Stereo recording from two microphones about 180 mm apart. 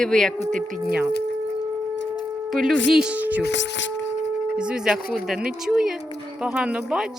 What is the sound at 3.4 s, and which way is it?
Speech, 75° left (ahead or behind).